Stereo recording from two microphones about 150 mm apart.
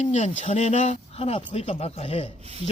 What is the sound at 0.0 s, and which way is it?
Speech, 50° left (ahead or behind).